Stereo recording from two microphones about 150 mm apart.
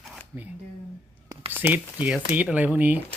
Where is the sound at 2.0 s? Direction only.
5° right (ahead or behind).